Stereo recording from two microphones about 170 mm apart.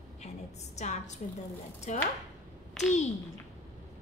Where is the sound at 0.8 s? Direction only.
40° left (ahead or behind).